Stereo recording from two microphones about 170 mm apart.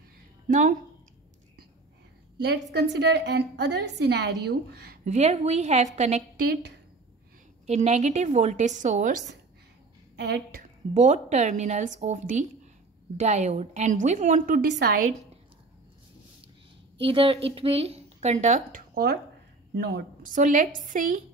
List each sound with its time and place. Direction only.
0.5 s a woman's voice: 50° right (ahead or behind)
2.4 s a woman's voice: 75° right (ahead or behind)
5.0 s a woman's voice: 40° right (ahead or behind)
6.3 s a woman's voice: 70° right (ahead or behind)
7.6 s a woman's voice: 40° right (ahead or behind)
10.9 s a woman's voice: 40° right (ahead or behind); by 15.0 s 65° right (ahead or behind)
17.0 s a woman's voice: 35° right (ahead or behind); by 19.1 s 55° right (ahead or behind)
19.7 s speech: 80° right
20.2 s a woman's voice: 50° right (ahead or behind)